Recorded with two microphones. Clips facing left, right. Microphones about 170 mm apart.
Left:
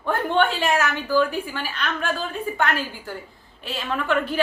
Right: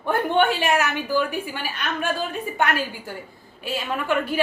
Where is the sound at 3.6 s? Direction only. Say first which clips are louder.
Right 1 dB; 10° right (ahead or behind).